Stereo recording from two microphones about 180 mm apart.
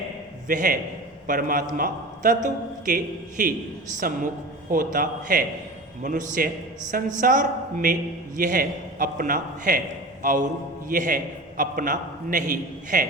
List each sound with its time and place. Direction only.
0.4 s a man's voice: 50° right (ahead or behind)